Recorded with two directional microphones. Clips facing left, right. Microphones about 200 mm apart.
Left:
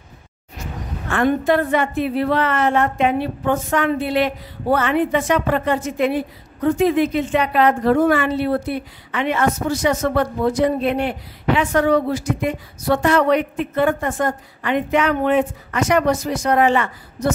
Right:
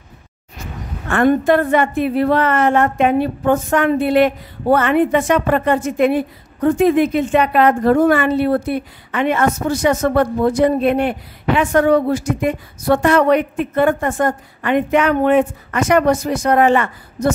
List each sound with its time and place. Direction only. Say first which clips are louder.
1.0 s a woman's voice: right 4 dB; 55° right (ahead or behind)